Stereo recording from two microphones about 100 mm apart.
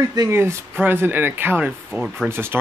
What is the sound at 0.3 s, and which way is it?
Speech, 25° right (ahead or behind).